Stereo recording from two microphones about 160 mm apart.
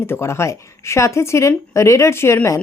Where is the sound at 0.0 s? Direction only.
15° left (ahead or behind).